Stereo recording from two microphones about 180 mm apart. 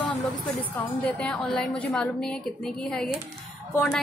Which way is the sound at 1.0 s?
5° left (ahead or behind).